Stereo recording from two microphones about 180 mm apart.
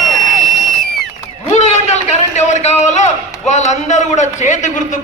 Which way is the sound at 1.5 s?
40° left (ahead or behind).